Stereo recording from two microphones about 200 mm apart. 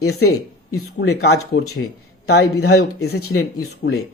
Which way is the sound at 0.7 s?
60° left (ahead or behind).